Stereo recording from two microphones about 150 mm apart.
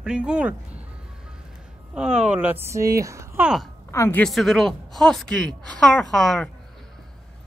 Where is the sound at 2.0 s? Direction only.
5° right (ahead or behind).